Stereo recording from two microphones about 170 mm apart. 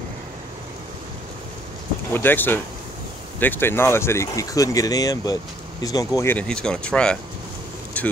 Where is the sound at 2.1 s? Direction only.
10° left (ahead or behind).